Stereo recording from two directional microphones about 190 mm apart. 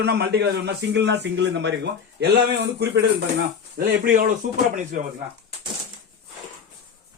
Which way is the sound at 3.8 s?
55° right (ahead or behind).